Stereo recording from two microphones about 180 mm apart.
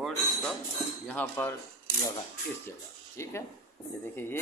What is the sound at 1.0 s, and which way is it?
Speech, 10° left (ahead or behind).